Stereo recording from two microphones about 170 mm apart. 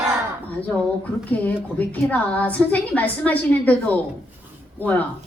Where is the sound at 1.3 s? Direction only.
10° left (ahead or behind).